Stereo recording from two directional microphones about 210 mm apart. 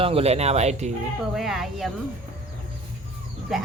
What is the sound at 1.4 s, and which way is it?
Speech, centre (ahead or behind).